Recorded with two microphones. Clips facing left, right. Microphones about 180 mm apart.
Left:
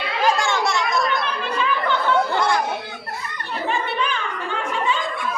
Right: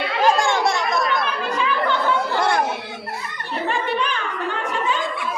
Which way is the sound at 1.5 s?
Centre (ahead or behind).